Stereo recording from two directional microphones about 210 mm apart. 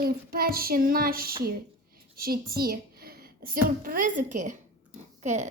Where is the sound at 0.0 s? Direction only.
45° right (ahead or behind).